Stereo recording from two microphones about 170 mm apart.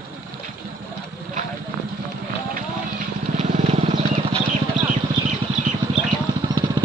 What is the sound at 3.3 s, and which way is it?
Vehicle, 40° right (ahead or behind).